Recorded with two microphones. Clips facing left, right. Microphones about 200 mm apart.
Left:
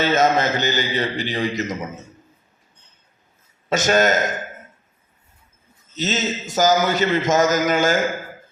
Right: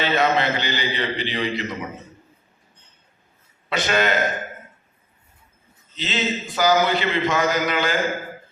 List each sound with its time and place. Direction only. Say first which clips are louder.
0.0 s a man's voice: left 3 dB; 45° left (ahead or behind)
3.7 s a man's voice: left 4 dB; 45° left (ahead or behind)
5.9 s a man's voice: left 2 dB; 45° left (ahead or behind)